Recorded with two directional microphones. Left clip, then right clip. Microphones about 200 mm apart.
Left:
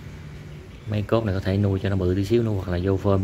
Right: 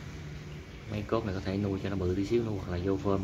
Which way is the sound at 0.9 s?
45° left (ahead or behind).